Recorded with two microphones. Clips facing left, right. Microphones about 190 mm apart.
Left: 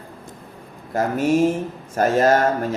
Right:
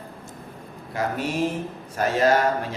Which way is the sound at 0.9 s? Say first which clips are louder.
Left 7 dB; 45° left (ahead or behind).